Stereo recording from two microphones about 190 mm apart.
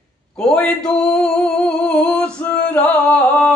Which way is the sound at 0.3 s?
5° left (ahead or behind).